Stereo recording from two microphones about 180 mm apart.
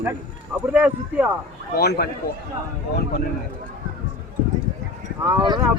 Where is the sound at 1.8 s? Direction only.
60° left (ahead or behind).